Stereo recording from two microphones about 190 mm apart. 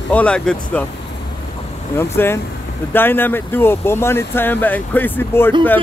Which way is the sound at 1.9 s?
15° left (ahead or behind).